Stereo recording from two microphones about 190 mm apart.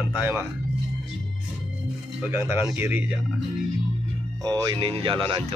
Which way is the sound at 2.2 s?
10° right (ahead or behind).